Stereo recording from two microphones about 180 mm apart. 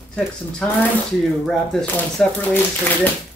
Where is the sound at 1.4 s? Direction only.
5° left (ahead or behind).